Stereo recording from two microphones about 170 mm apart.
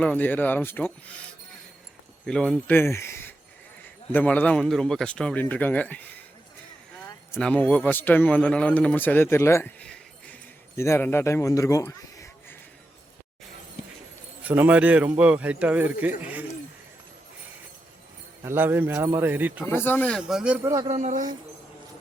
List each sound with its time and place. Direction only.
0.0 s a man's voice: 10° left (ahead or behind)
2.2 s a man's voice: 5° left (ahead or behind)
7.3 s a man's voice: 5° left (ahead or behind)
14.4 s speech: 10° right (ahead or behind)
18.4 s speech: 15° right (ahead or behind)
19.6 s a man's voice: 15° left (ahead or behind); by 20.6 s 5° right (ahead or behind)
20.8 s speech: 40° right (ahead or behind)